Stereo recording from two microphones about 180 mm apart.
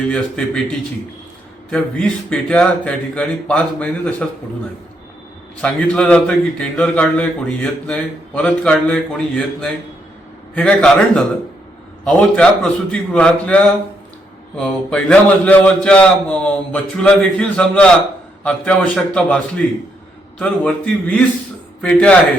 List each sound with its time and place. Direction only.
0.0 s a man's voice: 5° left (ahead or behind)
5.5 s a man's voice: 5° left (ahead or behind)
14.6 s a man's voice: 5° left (ahead or behind)